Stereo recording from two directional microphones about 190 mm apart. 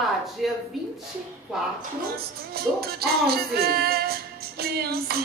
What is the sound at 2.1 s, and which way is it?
Music, 55° right (ahead or behind).